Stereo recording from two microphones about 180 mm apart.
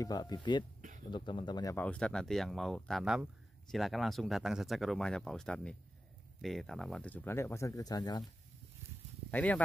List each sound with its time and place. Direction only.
0.0 s speech: 20° left (ahead or behind)
1.8 s speech: 5° left (ahead or behind); by 8.2 s 20° left (ahead or behind)
9.3 s speech: 10° left (ahead or behind)